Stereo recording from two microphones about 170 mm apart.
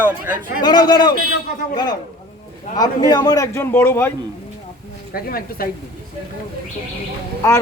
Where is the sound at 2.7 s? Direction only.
25° left (ahead or behind).